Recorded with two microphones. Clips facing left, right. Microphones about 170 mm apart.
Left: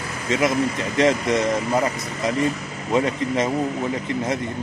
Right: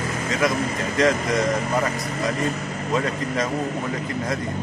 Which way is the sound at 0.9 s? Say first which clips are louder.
Left 2 dB; 25° left (ahead or behind).